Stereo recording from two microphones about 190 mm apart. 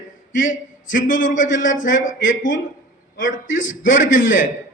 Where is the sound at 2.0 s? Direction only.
90° left.